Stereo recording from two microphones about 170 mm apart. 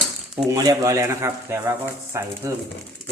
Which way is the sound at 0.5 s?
20° right (ahead or behind).